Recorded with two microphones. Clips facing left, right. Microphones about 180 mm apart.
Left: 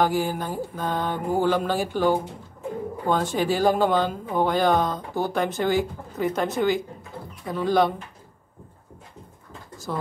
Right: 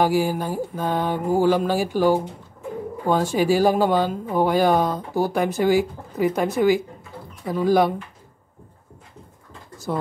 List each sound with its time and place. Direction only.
0.0 s speech: 5° right (ahead or behind)
9.9 s speech: 10° right (ahead or behind)